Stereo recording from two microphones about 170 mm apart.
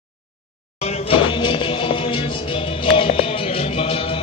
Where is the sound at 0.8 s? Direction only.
30° left (ahead or behind).